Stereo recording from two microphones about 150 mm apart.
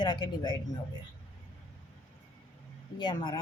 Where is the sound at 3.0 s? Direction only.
30° left (ahead or behind).